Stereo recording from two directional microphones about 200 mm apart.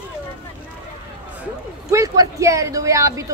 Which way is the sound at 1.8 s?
15° right (ahead or behind).